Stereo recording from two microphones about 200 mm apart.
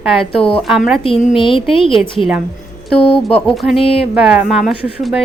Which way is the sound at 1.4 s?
25° left (ahead or behind).